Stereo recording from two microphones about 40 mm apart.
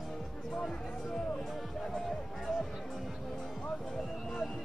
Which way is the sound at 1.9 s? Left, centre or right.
Centre.